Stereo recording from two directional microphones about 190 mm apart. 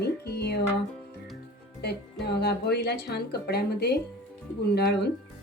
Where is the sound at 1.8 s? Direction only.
60° left (ahead or behind).